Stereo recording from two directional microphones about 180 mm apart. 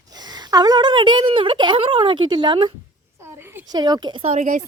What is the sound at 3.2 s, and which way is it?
Speech, 15° right (ahead or behind).